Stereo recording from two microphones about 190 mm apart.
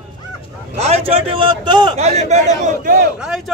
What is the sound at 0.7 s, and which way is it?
A man's voice, 35° right (ahead or behind).